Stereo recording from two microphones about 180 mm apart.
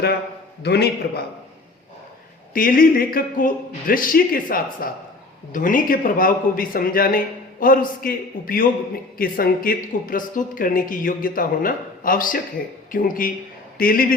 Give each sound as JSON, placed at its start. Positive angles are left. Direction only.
{"t": 0.6, "sound": "a man's voice", "side_deg": 65}
{"t": 2.5, "sound": "speech", "side_deg": 50}